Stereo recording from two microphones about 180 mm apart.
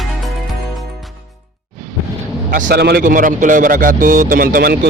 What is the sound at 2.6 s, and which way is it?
A man's voice, 65° right (ahead or behind).